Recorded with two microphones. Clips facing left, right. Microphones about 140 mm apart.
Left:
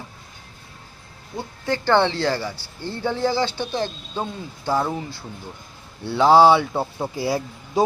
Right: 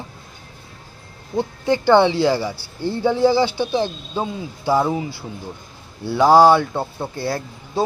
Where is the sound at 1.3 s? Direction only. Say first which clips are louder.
Right 6 dB; 15° right (ahead or behind).